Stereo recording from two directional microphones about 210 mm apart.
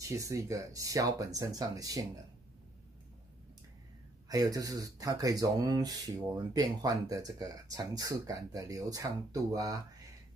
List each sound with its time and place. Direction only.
0.0 s speech: 15° right (ahead or behind)
4.3 s speech: 15° right (ahead or behind)